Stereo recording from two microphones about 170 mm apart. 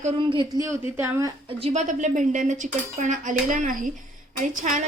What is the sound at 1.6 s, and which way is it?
A woman's voice, 45° right (ahead or behind).